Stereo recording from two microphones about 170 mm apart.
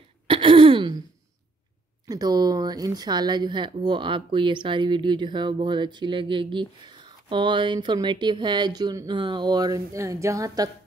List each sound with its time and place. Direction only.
0.3 s throat clearing: 30° right (ahead or behind)
2.0 s speech: 20° right (ahead or behind)